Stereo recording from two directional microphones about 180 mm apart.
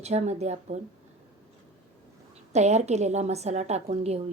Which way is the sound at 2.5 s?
40° right (ahead or behind).